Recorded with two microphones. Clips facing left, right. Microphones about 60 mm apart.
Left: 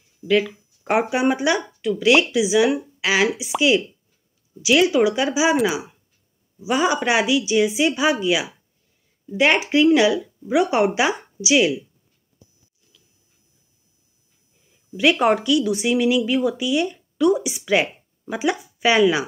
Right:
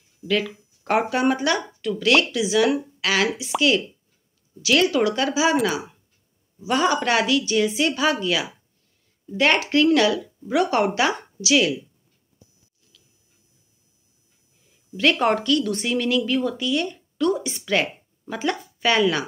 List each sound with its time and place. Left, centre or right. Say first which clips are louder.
0.2 s speech: left 4 dB; centre
1.1 s speech: left 1 dB; centre
6.6 s speech: left 1 dB; centre
15.0 s a woman's voice: left 2 dB; centre